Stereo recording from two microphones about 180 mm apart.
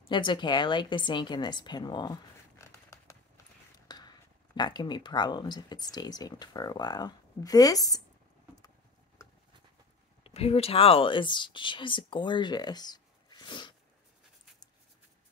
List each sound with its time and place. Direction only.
0.1 s speech: 25° left (ahead or behind)
2.6 s a sound: 15° left (ahead or behind)
4.6 s speech: 25° left (ahead or behind)
10.2 s speech: 35° left (ahead or behind)